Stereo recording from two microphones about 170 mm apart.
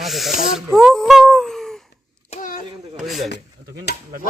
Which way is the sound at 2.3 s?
50° left (ahead or behind).